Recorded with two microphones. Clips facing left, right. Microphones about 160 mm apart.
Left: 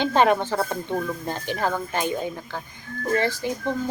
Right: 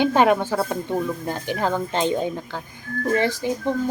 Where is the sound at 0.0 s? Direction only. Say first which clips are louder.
Right 2 dB; 10° right (ahead or behind).